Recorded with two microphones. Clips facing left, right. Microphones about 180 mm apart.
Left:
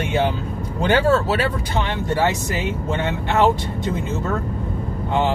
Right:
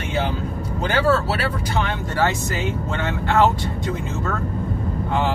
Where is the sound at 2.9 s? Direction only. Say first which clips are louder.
Left 2 dB; 20° left (ahead or behind).